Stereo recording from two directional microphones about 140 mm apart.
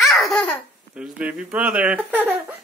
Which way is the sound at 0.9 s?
5° right (ahead or behind).